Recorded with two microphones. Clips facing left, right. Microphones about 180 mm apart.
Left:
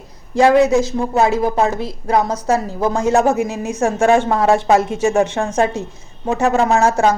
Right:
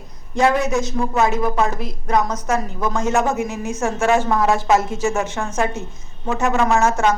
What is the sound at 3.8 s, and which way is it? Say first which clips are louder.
A woman's voice: left 4 dB; 30° left (ahead or behind).